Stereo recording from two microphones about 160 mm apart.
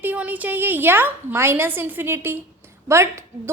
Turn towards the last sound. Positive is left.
turn(degrees=-20)  # may be behind; listen again after turning